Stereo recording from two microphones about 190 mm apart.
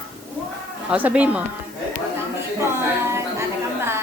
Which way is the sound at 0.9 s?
5° right (ahead or behind).